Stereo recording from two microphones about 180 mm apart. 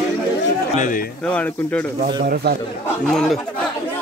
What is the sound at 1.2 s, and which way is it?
Speech, 5° left (ahead or behind).